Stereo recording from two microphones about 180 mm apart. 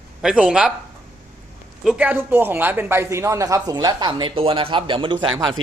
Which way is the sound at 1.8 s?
5° right (ahead or behind).